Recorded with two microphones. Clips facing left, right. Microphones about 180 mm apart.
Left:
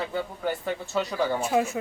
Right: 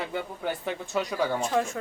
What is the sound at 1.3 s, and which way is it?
Speech, 10° left (ahead or behind).